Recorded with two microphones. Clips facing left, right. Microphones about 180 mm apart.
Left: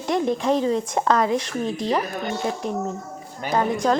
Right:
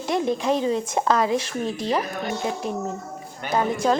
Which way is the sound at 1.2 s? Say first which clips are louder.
Even; 25° right (ahead or behind).